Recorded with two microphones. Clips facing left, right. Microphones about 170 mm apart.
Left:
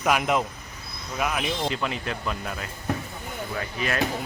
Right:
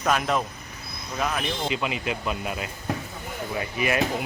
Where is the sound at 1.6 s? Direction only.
10° right (ahead or behind).